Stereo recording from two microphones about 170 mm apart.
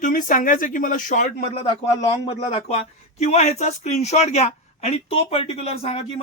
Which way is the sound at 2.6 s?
40° left (ahead or behind).